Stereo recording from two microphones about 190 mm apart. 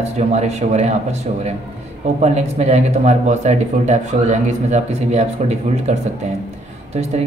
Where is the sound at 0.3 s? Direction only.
35° right (ahead or behind).